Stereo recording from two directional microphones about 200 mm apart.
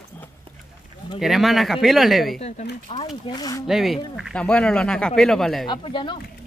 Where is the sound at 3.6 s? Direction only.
Centre (ahead or behind).